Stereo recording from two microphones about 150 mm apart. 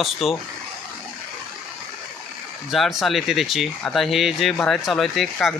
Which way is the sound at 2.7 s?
Centre (ahead or behind).